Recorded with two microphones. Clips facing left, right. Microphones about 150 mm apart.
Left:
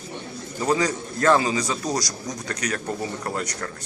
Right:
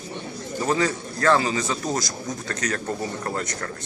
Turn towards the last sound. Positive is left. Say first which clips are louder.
# even
turn(degrees=10)  # may be behind; listen again after turning